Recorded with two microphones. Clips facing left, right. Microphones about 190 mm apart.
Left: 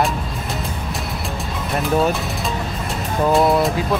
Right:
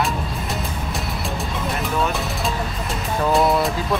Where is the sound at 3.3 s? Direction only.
Centre (ahead or behind).